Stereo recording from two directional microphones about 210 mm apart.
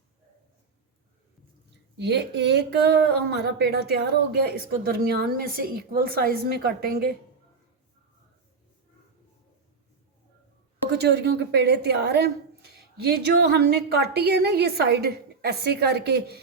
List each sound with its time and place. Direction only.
2.0 s speech: 55° right (ahead or behind)
10.9 s speech: 50° right (ahead or behind)